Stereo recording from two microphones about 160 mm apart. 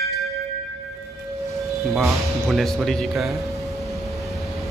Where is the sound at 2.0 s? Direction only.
Centre (ahead or behind).